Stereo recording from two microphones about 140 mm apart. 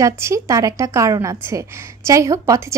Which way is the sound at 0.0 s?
20° right (ahead or behind).